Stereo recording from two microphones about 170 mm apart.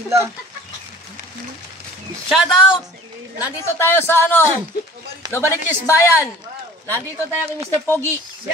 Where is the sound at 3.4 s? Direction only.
15° left (ahead or behind).